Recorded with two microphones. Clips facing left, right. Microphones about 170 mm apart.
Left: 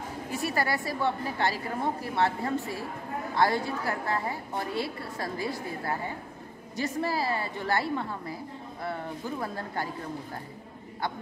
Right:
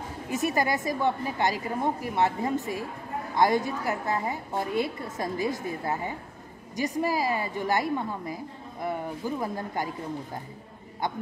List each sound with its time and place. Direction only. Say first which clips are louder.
0.3 s a woman's voice: right 3 dB; 20° right (ahead or behind)